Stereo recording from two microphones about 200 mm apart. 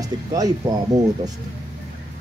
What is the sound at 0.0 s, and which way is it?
Speech, 20° right (ahead or behind).